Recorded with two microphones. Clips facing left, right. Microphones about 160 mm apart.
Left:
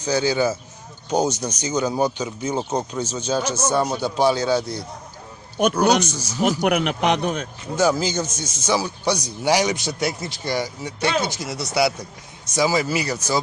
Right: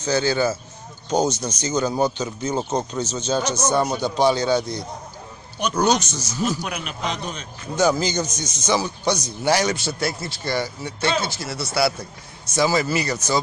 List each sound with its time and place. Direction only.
0.0 s a man's voice: 10° left (ahead or behind)
6.0 s speech: 10° left (ahead or behind)
6.6 s speech: 65° left (ahead or behind)
7.7 s speech: 5° left (ahead or behind)